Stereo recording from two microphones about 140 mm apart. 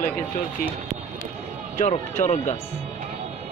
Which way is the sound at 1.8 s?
60° left (ahead or behind).